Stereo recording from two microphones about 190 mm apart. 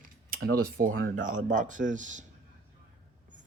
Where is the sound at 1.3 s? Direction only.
40° right (ahead or behind).